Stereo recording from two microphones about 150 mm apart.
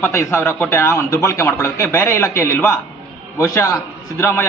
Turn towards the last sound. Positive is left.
turn(degrees=15)  # may be behind; listen again after turning